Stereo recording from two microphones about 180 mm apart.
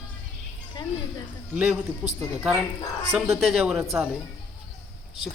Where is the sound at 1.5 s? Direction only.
5° right (ahead or behind).